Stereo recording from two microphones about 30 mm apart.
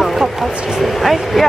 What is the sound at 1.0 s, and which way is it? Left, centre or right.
Speech, centre.